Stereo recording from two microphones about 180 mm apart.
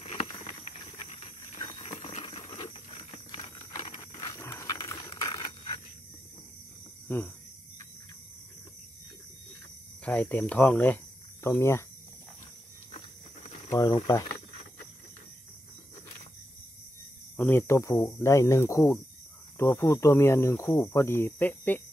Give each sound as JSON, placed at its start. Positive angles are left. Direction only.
{"t": 0.0, "sound": "a sound", "side_deg": 35}
{"t": 1.6, "sound": "patter", "side_deg": 35}
{"t": 2.5, "sound": "a sound", "side_deg": 35}
{"t": 4.1, "sound": "pant", "side_deg": 20}
{"t": 7.1, "sound": "speech", "side_deg": 10}
{"t": 10.0, "sound": "speech", "side_deg": 5}
{"t": 13.7, "sound": "speech", "side_deg": 20}
{"t": 17.4, "sound": "speech", "side_deg": 10}